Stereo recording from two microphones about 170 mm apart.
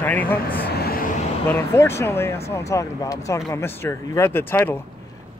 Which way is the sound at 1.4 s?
15° left (ahead or behind).